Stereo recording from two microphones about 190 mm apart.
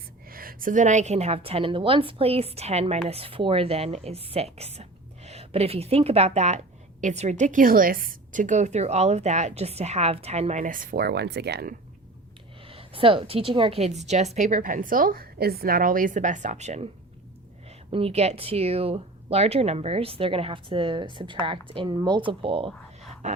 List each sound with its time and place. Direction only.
0.3 s a woman's voice: 50° right (ahead or behind)
12.6 s a woman's voice: 30° right (ahead or behind)